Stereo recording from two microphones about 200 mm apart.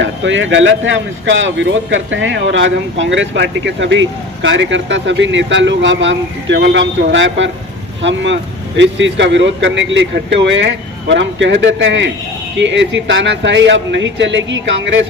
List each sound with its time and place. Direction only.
0.0 s speech: 65° right (ahead or behind)